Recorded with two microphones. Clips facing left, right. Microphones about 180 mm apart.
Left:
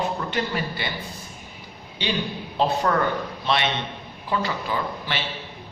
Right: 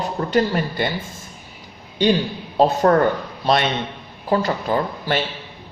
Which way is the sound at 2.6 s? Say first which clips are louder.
Right 7 dB; 45° right (ahead or behind).